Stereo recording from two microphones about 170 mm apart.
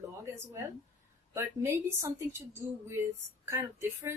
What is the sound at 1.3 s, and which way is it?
A woman's voice, 15° right (ahead or behind).